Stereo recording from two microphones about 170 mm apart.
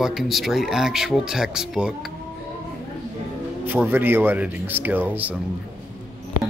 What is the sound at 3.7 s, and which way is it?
Speech, 10° right (ahead or behind).